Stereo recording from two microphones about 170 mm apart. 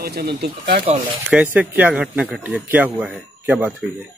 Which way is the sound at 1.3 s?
10° right (ahead or behind).